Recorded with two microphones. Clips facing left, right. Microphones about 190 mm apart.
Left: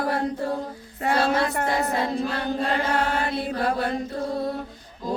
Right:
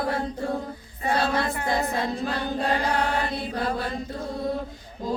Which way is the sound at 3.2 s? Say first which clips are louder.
Left 3 dB; 55° left (ahead or behind).